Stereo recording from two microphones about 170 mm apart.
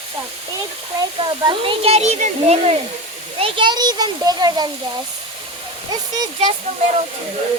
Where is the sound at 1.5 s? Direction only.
35° right (ahead or behind).